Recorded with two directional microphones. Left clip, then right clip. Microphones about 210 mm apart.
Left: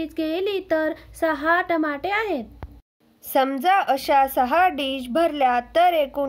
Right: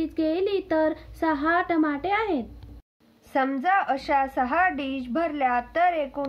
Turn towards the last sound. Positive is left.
turn(degrees=40)  # may be behind; listen again after turning